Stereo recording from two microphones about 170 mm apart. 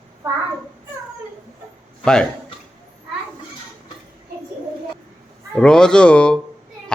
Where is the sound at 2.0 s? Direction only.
5° left (ahead or behind).